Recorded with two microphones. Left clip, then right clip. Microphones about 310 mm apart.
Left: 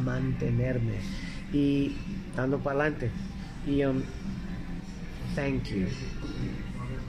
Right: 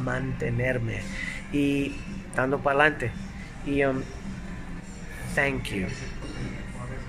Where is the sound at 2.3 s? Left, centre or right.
Right.